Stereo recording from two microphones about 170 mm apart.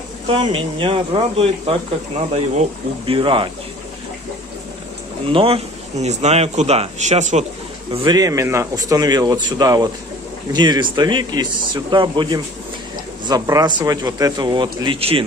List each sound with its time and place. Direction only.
0.3 s speech: 30° right (ahead or behind)
5.3 s speech: 35° right (ahead or behind)
7.9 s speech: 25° right (ahead or behind)